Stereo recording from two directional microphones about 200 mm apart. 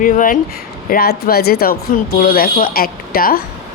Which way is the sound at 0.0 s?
40° left (ahead or behind).